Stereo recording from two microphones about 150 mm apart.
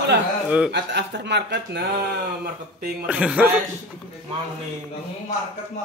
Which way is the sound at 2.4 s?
90° right.